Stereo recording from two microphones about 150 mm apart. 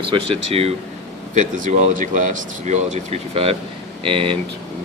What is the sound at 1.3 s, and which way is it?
Speech, 60° right (ahead or behind).